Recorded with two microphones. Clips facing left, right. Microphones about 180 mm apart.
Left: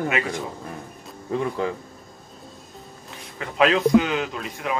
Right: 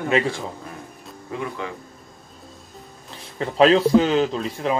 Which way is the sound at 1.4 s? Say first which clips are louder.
Left 4 dB; 35° left (ahead or behind).